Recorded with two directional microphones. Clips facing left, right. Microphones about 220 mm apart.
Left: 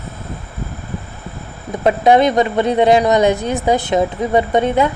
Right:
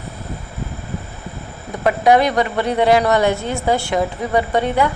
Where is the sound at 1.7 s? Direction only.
25° left (ahead or behind).